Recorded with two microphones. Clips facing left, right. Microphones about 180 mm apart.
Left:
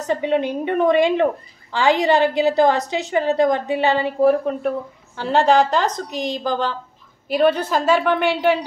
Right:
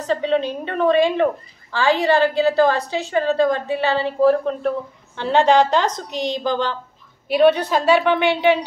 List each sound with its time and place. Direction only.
0.0 s a woman's voice: 15° left (ahead or behind)